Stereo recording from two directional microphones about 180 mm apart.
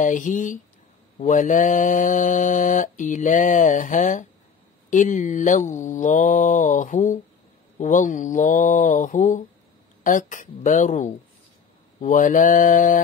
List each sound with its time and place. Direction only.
0.0 s mantra: 45° left (ahead or behind)